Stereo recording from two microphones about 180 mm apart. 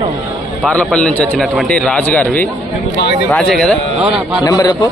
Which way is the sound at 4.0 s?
5° right (ahead or behind).